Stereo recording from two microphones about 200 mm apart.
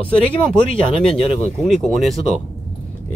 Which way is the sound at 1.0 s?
Centre (ahead or behind).